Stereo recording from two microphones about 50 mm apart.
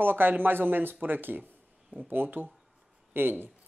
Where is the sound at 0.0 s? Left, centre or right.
Right.